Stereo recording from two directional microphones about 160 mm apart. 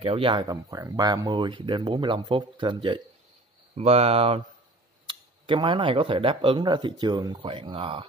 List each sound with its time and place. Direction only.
0.0 s speech: 35° right (ahead or behind)
3.7 s speech: 40° right (ahead or behind)